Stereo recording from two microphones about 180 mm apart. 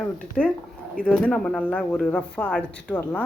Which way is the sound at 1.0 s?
5° left (ahead or behind).